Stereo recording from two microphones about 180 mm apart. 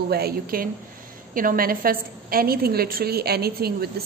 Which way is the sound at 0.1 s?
55° right (ahead or behind).